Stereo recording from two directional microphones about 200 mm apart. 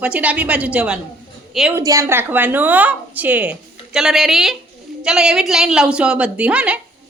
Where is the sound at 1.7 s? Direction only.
15° right (ahead or behind).